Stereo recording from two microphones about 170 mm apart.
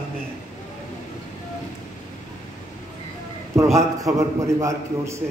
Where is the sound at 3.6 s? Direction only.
15° right (ahead or behind).